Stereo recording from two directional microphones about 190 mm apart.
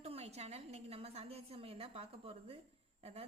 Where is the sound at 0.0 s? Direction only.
35° right (ahead or behind).